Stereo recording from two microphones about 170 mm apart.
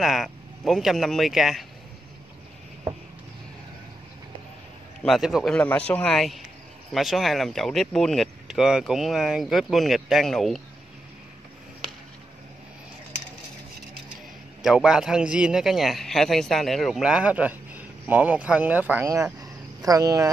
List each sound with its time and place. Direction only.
0.0 s a man's voice: centre (ahead or behind)
5.0 s a man's voice: centre (ahead or behind)
14.6 s a man's voice: 5° right (ahead or behind)
19.4 s a sound: 20° right (ahead or behind)